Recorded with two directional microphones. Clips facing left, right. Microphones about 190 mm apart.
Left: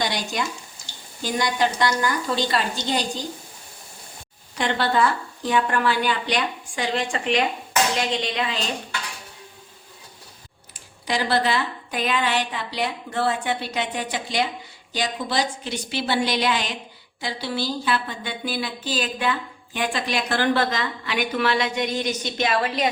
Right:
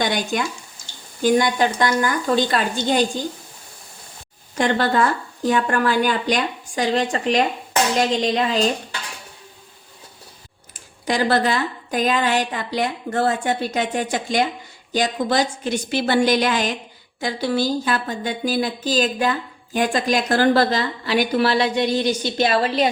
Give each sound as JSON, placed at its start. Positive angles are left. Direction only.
{"t": 0.0, "sound": "a woman's voice", "side_deg": -50}
{"t": 4.5, "sound": "a woman's voice", "side_deg": -45}
{"t": 10.8, "sound": "a woman's voice", "side_deg": -45}